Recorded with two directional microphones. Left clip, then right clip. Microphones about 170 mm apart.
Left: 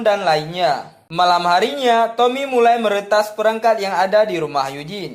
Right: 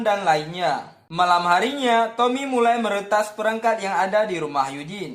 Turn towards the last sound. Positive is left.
turn(degrees=40)  # may be behind; listen again after turning